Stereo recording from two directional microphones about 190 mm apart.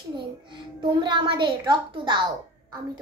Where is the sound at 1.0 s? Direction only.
25° right (ahead or behind).